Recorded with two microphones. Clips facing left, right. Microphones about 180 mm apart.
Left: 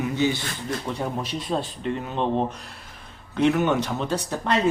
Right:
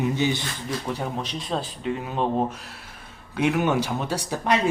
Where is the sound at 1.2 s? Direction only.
5° left (ahead or behind).